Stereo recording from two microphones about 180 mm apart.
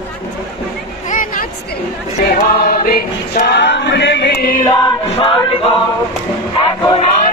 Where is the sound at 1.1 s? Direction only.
50° left (ahead or behind).